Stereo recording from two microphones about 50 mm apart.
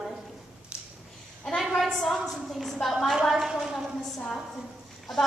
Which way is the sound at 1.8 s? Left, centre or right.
Centre.